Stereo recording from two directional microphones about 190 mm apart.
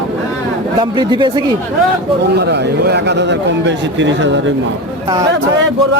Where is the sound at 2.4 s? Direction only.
60° right (ahead or behind).